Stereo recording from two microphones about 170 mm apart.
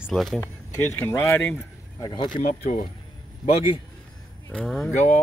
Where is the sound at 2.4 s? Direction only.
50° left (ahead or behind).